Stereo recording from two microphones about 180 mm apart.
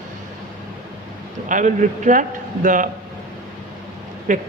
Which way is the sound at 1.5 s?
45° right (ahead or behind).